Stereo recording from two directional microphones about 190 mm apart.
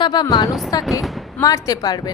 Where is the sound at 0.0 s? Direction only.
20° left (ahead or behind).